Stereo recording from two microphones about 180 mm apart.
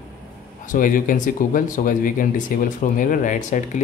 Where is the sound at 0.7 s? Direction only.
50° left (ahead or behind).